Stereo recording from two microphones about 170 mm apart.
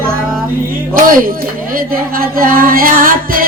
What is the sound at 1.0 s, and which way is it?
Music, 55° right (ahead or behind).